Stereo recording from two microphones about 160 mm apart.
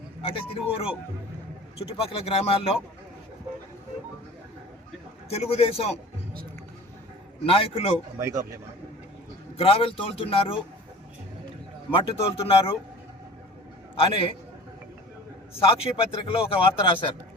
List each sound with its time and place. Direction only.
0.2 s a man's voice: 35° left (ahead or behind)
5.3 s a man's voice: 40° left (ahead or behind)
7.4 s a man's voice: 35° left (ahead or behind)
8.2 s speech: 20° right (ahead or behind)
9.6 s a man's voice: 35° left (ahead or behind)
11.9 s a man's voice: 35° left (ahead or behind)
13.9 s a man's voice: 35° left (ahead or behind)
16.2 s a man's voice: 35° left (ahead or behind)